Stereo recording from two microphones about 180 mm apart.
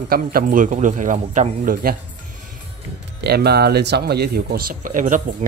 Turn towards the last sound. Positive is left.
turn(degrees=-45)  # may be behind; listen again after turning